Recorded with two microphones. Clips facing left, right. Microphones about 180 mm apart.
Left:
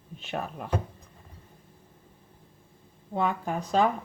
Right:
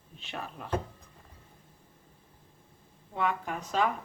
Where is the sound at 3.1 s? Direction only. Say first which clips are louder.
Left 3 dB; 35° left (ahead or behind).